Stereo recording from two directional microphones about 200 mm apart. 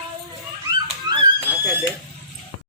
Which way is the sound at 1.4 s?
10° right (ahead or behind).